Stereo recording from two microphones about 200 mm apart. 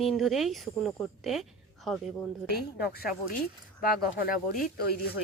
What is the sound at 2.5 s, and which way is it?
Speech, 50° left (ahead or behind).